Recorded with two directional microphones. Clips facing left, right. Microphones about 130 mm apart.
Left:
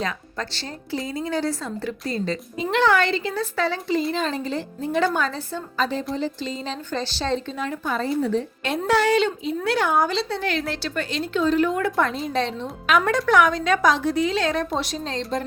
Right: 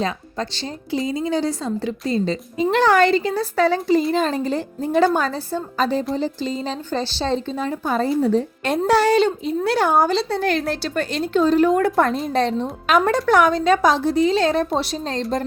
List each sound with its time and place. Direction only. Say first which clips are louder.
0.0 s a woman's voice: right 4 dB; 20° right (ahead or behind)
2.6 s a woman's voice: right 4 dB; 40° right (ahead or behind)